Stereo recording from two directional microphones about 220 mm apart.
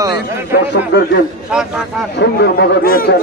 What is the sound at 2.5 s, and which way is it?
Speech, 40° left (ahead or behind).